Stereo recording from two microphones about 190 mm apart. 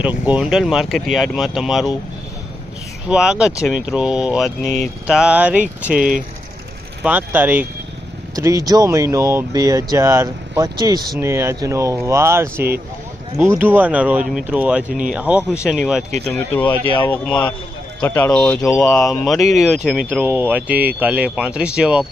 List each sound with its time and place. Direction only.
0.0 s speech: 10° right (ahead or behind)
3.1 s speech: 5° right (ahead or behind)
6.0 s speech: 45° right (ahead or behind)
7.0 s speech: 10° right (ahead or behind)
14.8 s speech: 45° right (ahead or behind)
15.1 s speech: 5° right (ahead or behind)
18.9 s speech: 15° left (ahead or behind)
19.2 s speech: centre (ahead or behind)